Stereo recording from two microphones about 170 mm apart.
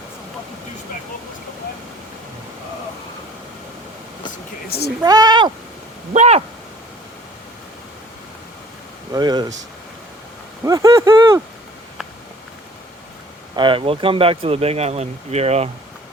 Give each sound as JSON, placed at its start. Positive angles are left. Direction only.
{"t": 5.0, "sound": "speech", "side_deg": -25}
{"t": 6.1, "sound": "speech", "side_deg": -40}
{"t": 9.1, "sound": "speech", "side_deg": -25}
{"t": 10.6, "sound": "speech", "side_deg": -20}
{"t": 13.6, "sound": "speech", "side_deg": -30}